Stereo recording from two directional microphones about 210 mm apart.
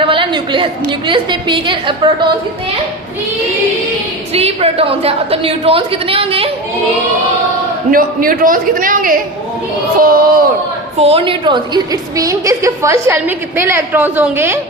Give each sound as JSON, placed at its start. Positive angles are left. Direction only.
{"t": 0.0, "sound": "a woman's voice", "side_deg": -25}
{"t": 4.3, "sound": "a woman's voice", "side_deg": -30}
{"t": 7.9, "sound": "a woman's voice", "side_deg": -40}
{"t": 11.0, "sound": "a woman's voice", "side_deg": -25}